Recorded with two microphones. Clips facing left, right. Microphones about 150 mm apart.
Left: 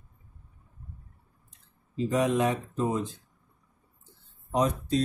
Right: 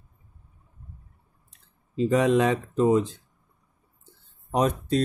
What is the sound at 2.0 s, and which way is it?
Speech, 80° right.